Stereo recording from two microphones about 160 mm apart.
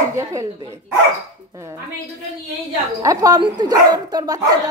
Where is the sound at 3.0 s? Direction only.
20° right (ahead or behind).